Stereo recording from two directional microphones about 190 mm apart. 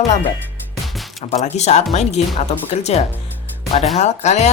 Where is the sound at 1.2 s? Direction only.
35° left (ahead or behind).